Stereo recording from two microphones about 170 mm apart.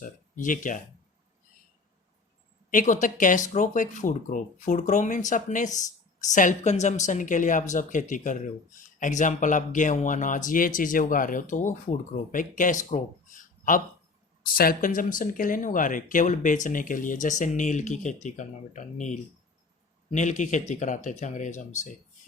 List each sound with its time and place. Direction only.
0.0 s speech: 50° left (ahead or behind)
2.6 s speech: 50° left (ahead or behind)